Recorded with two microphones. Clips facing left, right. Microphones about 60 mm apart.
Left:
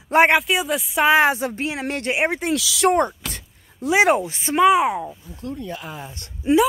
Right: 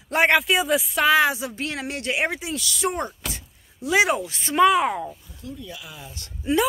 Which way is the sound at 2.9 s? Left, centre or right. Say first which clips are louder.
Left 9 dB; left.